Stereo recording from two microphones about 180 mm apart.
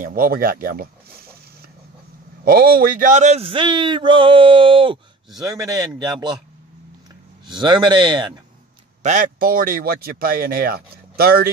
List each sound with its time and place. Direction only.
0.0 s speech: 55° right (ahead or behind)
2.4 s speech: 55° right (ahead or behind); by 6.4 s 25° right (ahead or behind)
7.4 s speech: 25° right (ahead or behind)
9.0 s speech: 45° right (ahead or behind)